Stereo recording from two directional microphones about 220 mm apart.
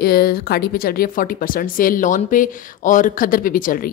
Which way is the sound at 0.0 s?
45° left (ahead or behind).